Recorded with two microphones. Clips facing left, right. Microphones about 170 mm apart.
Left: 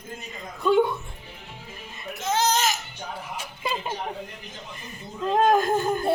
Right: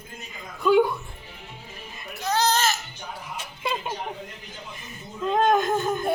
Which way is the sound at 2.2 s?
20° left (ahead or behind).